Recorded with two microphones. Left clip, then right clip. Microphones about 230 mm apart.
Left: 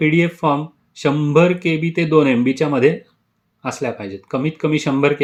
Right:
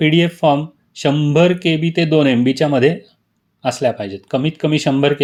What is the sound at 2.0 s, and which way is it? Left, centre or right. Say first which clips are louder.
Speech: even; centre.